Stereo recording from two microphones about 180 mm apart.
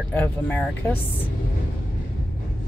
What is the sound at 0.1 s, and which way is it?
Speech, 10° left (ahead or behind).